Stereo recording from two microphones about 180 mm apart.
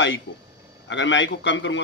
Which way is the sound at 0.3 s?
75° left (ahead or behind).